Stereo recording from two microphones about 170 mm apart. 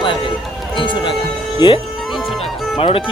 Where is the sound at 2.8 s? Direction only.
30° left (ahead or behind).